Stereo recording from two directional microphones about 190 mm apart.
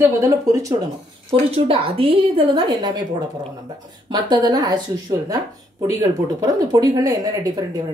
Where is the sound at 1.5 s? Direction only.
30° right (ahead or behind).